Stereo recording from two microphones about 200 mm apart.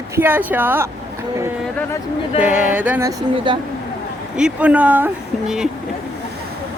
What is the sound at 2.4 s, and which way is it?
Speech, 5° right (ahead or behind).